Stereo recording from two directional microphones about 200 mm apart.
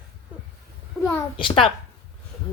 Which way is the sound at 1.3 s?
25° left (ahead or behind).